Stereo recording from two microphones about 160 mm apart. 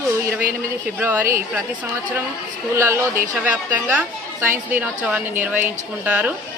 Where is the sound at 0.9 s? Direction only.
15° right (ahead or behind).